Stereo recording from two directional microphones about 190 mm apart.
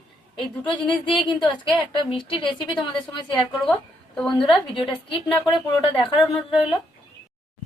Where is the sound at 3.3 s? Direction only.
5° left (ahead or behind).